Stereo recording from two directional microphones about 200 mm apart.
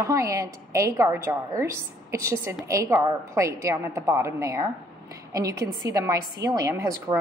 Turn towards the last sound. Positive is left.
turn(degrees=-20)  # may be behind; listen again after turning